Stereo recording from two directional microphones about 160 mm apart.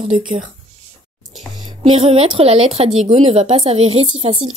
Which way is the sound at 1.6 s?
30° right (ahead or behind).